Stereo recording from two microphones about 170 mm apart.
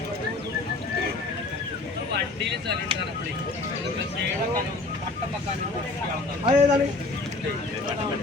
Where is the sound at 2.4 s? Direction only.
90° right.